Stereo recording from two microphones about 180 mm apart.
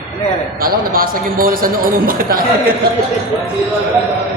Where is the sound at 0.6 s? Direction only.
55° right (ahead or behind).